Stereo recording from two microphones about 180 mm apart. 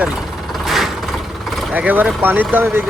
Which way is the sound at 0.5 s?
Centre (ahead or behind).